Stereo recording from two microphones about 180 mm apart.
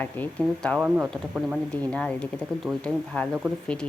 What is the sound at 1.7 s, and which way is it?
Speech, 5° left (ahead or behind).